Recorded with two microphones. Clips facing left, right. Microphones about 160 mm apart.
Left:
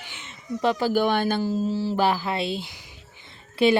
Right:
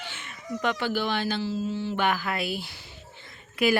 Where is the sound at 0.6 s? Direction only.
40° left (ahead or behind).